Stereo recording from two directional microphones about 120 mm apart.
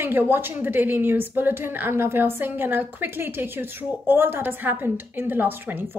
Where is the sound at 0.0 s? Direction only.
15° right (ahead or behind).